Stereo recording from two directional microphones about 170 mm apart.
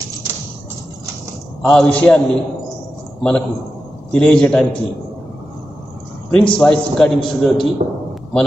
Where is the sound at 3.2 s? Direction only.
5° left (ahead or behind).